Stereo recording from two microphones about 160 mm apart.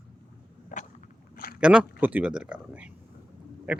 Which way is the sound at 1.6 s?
5° right (ahead or behind).